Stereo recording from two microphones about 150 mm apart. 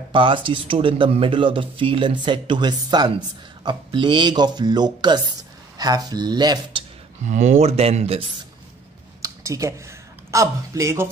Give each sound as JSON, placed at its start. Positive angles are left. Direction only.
{"t": 0.1, "sound": "speech", "side_deg": -35}
{"t": 7.2, "sound": "speech", "side_deg": -50}
{"t": 9.2, "sound": "speech", "side_deg": -20}